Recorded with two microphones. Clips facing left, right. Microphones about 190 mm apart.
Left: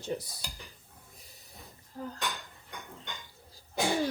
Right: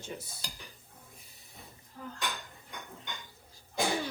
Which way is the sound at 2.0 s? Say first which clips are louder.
Left 5 dB; 35° left (ahead or behind).